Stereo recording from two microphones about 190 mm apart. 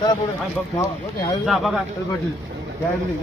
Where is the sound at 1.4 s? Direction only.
Centre (ahead or behind).